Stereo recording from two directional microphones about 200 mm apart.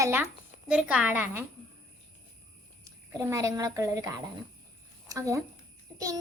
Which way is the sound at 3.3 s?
15° right (ahead or behind).